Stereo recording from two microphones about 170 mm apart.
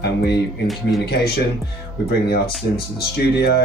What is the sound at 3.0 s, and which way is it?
Speech, 70° left (ahead or behind).